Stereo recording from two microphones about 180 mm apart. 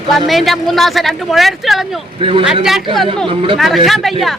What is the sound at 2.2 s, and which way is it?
Speech, 30° right (ahead or behind).